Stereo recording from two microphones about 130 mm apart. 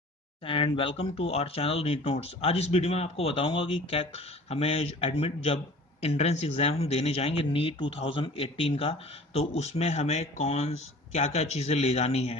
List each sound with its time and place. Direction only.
0.5 s speech: 45° left (ahead or behind)